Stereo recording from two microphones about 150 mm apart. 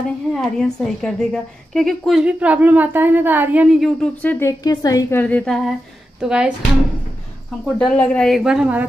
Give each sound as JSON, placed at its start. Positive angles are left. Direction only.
{"t": 0.3, "sound": "a woman's voice", "side_deg": 5}
{"t": 3.8, "sound": "a woman's voice", "side_deg": 5}
{"t": 5.2, "sound": "a woman's voice", "side_deg": 5}
{"t": 7.6, "sound": "speech", "side_deg": 10}